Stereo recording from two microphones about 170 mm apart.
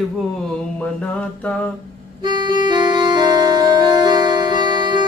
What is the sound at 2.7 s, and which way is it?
Music, 25° right (ahead or behind).